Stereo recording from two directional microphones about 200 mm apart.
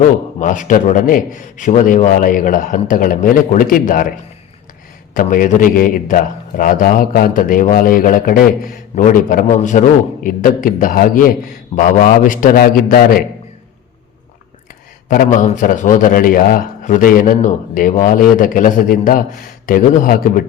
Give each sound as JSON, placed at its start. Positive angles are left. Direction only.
{"t": 0.3, "sound": "a man's voice", "side_deg": 40}
{"t": 5.1, "sound": "a man's voice", "side_deg": 40}
{"t": 15.1, "sound": "a man's voice", "side_deg": 40}